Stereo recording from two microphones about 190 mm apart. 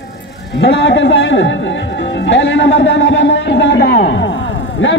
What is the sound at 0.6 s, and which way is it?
A man's voice, 70° left (ahead or behind).